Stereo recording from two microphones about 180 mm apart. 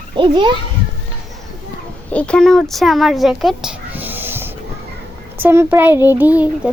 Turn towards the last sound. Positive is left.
turn(degrees=-10)  # may be behind; listen again after turning